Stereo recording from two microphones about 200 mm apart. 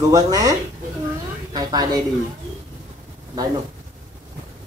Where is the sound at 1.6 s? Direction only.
20° right (ahead or behind).